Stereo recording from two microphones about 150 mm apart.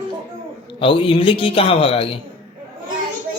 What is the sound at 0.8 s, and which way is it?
Speech, 35° left (ahead or behind).